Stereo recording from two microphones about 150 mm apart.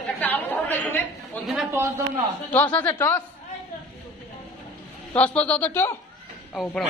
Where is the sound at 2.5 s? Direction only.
10° left (ahead or behind).